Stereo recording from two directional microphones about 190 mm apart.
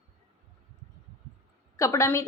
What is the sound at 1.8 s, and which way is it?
Speech, 15° left (ahead or behind).